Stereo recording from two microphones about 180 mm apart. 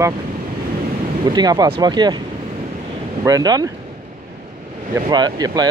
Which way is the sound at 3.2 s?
20° right (ahead or behind).